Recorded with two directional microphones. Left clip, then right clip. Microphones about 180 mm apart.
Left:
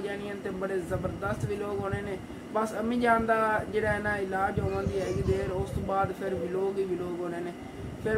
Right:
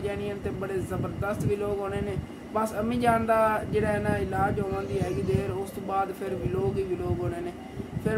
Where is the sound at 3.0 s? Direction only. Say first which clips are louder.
Right 2 dB; 10° right (ahead or behind).